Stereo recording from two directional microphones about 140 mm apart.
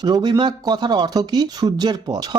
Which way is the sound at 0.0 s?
30° right (ahead or behind).